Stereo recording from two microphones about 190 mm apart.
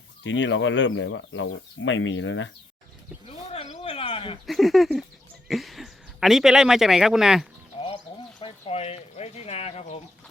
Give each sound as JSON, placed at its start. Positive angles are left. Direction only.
{"t": 0.3, "sound": "speech", "side_deg": 75}
{"t": 3.2, "sound": "a sound", "side_deg": 30}
{"t": 4.4, "sound": "speech", "side_deg": 0}
{"t": 8.4, "sound": "speech", "side_deg": 30}